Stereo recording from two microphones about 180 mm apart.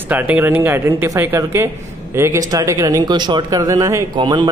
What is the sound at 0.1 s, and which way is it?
A woman's voice, 10° right (ahead or behind).